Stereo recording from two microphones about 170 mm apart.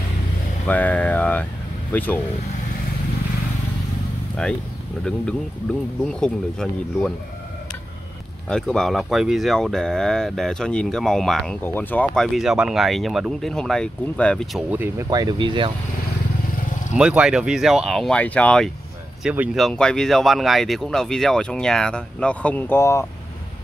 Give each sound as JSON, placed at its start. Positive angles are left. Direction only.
{"t": 0.7, "sound": "speech", "side_deg": 10}
{"t": 4.4, "sound": "speech", "side_deg": 5}
{"t": 6.0, "sound": "speech", "side_deg": 5}
{"t": 8.5, "sound": "speech", "side_deg": 5}
{"t": 14.7, "sound": "speech", "side_deg": -10}
{"t": 15.0, "sound": "speech", "side_deg": -25}
{"t": 16.9, "sound": "speech", "side_deg": -5}
{"t": 19.2, "sound": "speech", "side_deg": -5}